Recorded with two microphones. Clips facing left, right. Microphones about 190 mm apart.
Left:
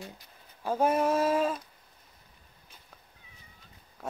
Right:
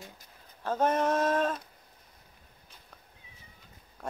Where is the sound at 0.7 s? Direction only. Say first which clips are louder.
Left 1 dB; 10° left (ahead or behind).